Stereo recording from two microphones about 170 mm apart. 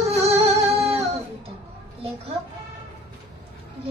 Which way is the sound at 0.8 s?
40° right (ahead or behind).